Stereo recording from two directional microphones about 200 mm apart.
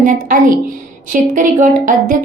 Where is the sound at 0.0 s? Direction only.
40° right (ahead or behind).